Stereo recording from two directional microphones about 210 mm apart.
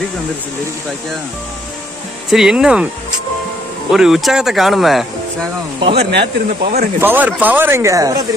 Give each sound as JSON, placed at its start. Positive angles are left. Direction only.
{"t": 2.3, "sound": "speech", "side_deg": -5}
{"t": 3.9, "sound": "speech", "side_deg": 0}
{"t": 5.8, "sound": "speech", "side_deg": -25}
{"t": 6.6, "sound": "speech", "side_deg": -45}
{"t": 7.0, "sound": "speech", "side_deg": -10}